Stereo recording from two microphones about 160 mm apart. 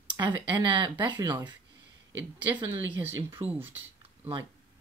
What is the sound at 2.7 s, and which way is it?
Speech, 10° right (ahead or behind).